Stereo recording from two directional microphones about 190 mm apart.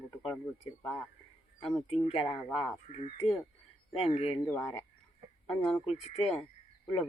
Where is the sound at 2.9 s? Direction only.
35° left (ahead or behind).